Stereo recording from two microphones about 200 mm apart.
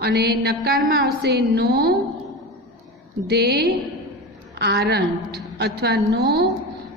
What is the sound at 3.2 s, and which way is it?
A woman's voice, 55° right (ahead or behind).